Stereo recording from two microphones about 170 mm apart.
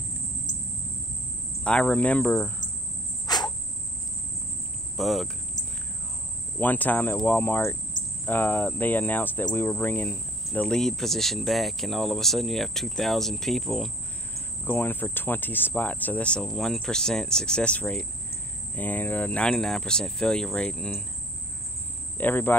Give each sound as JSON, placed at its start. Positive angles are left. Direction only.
{"t": 1.6, "sound": "speech", "side_deg": 5}
{"t": 3.3, "sound": "cricket", "side_deg": 25}
{"t": 4.9, "sound": "speech", "side_deg": 0}
{"t": 6.6, "sound": "speech", "side_deg": 10}
{"t": 14.6, "sound": "speech", "side_deg": 10}
{"t": 22.2, "sound": "speech", "side_deg": 10}